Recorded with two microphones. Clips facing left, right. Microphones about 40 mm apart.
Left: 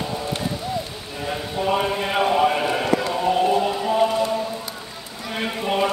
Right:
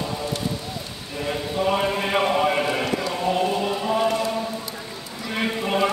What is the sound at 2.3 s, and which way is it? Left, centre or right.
Clip-clop, centre.